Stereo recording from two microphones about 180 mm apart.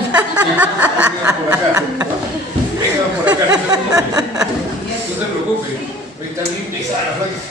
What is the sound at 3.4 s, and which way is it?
Speech, 20° right (ahead or behind).